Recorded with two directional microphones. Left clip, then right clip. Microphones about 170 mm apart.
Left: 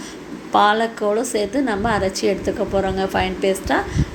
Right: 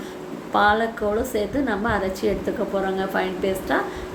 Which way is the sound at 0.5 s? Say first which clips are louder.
Left 3 dB; 20° left (ahead or behind).